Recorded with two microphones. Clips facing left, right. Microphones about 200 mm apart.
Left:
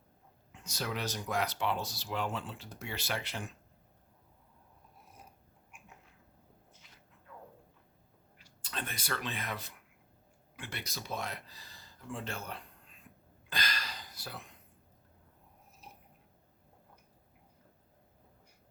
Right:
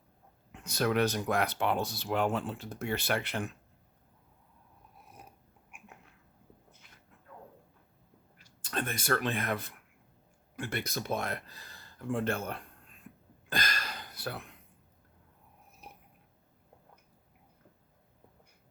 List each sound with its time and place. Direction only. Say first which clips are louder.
0.5 s speech: right 9 dB; 60° right (ahead or behind)
8.4 s speech: right 6 dB; 50° right (ahead or behind)
13.5 s a sound: right 4 dB; 50° right (ahead or behind)